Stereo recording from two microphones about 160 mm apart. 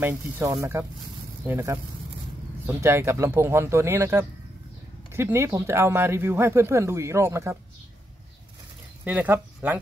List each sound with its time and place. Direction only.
0.0 s speech: 15° right (ahead or behind)
9.0 s speech: 10° right (ahead or behind)